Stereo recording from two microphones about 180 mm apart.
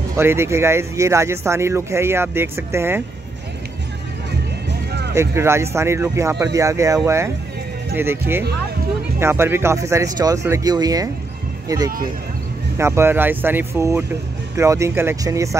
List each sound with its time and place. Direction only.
0.2 s speech: 15° right (ahead or behind)
5.1 s speech: 15° right (ahead or behind)
12.7 s speech: 15° right (ahead or behind)